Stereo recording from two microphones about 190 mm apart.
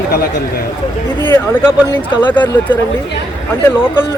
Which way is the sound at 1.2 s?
10° left (ahead or behind).